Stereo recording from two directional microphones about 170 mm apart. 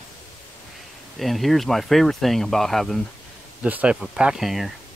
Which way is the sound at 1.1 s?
Centre (ahead or behind).